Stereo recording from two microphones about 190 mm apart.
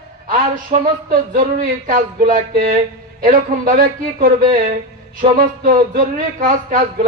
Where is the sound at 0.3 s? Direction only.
50° right (ahead or behind).